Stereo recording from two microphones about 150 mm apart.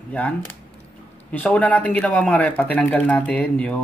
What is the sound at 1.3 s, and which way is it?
Speech, 10° left (ahead or behind).